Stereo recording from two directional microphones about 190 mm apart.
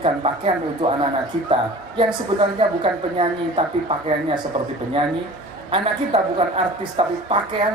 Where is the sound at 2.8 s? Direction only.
30° right (ahead or behind).